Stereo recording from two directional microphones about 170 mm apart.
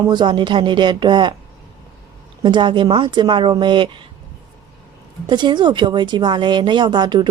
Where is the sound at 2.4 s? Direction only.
25° right (ahead or behind).